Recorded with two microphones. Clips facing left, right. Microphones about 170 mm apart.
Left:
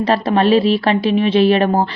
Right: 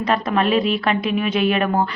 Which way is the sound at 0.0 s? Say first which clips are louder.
Left 5 dB; 30° left (ahead or behind).